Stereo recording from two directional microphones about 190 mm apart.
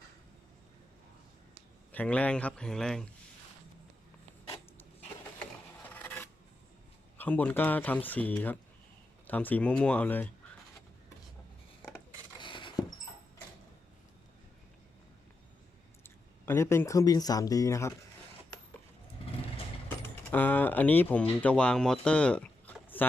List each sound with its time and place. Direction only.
1.9 s speech: 5° left (ahead or behind)
5.9 s scrape: 10° left (ahead or behind)
7.2 s speech: 10° left (ahead or behind)
12.4 s a sound: 25° left (ahead or behind)
16.0 s speech: 15° left (ahead or behind)
20.3 s speech: 10° left (ahead or behind)